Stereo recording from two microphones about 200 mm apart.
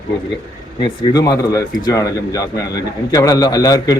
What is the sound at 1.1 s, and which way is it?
A man's voice, 20° left (ahead or behind).